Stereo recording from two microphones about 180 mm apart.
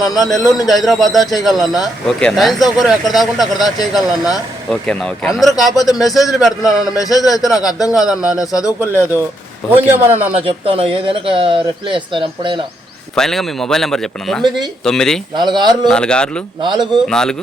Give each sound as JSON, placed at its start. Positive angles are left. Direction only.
{"t": 0.7, "sound": "speech", "side_deg": 0}
{"t": 6.9, "sound": "a man's voice", "side_deg": 20}
{"t": 7.3, "sound": "speech", "side_deg": 0}
{"t": 7.6, "sound": "a man's voice", "side_deg": 20}
{"t": 7.9, "sound": "speech", "side_deg": 0}
{"t": 9.6, "sound": "a man's voice", "side_deg": -10}
{"t": 10.4, "sound": "speech", "side_deg": -30}
{"t": 13.1, "sound": "speech", "side_deg": 0}
{"t": 15.4, "sound": "speech", "side_deg": -25}
{"t": 15.9, "sound": "speech", "side_deg": 5}
{"t": 16.6, "sound": "speech", "side_deg": -25}
{"t": 17.1, "sound": "speech", "side_deg": 5}